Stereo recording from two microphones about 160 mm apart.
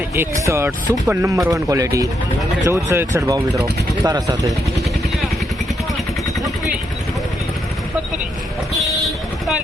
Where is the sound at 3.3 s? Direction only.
20° right (ahead or behind).